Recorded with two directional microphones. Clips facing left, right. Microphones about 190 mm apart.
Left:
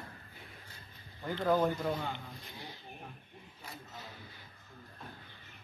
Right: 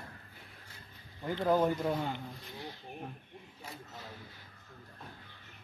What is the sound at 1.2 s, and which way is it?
Speech, 10° right (ahead or behind).